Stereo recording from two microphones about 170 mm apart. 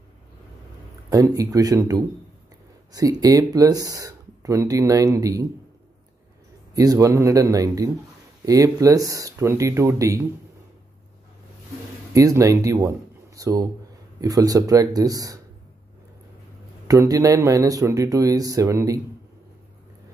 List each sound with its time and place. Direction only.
1.1 s speech: 20° right (ahead or behind)
6.7 s speech: 20° right (ahead or behind)
12.1 s speech: 20° right (ahead or behind)
16.8 s speech: 20° right (ahead or behind)